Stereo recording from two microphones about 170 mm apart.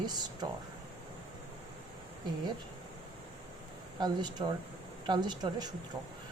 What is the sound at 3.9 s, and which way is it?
A woman's voice, 25° right (ahead or behind).